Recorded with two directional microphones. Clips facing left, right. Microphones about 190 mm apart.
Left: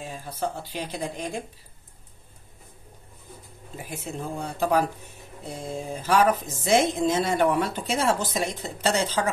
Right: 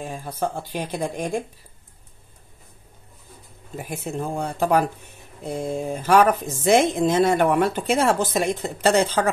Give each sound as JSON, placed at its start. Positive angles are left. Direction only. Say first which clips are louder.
{"t": 0.0, "sound": "speech", "louder": "right 4 dB", "side_deg": -50}
{"t": 3.7, "sound": "speech", "louder": "right 5 dB", "side_deg": -55}
{"t": 6.0, "sound": "speech", "louder": "right 4 dB", "side_deg": -60}